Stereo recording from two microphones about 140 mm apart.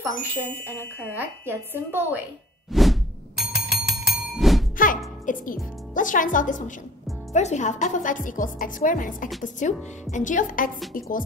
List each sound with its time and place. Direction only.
1.1 s a woman's voice: 15° right (ahead or behind)
2.7 s bicycle bell: centre (ahead or behind)
4.7 s speech: 75° left (ahead or behind)
7.3 s speech: 55° left (ahead or behind); by 9.3 s 75° left (ahead or behind)
9.4 s speech: 60° left (ahead or behind)
11.0 s music: 80° left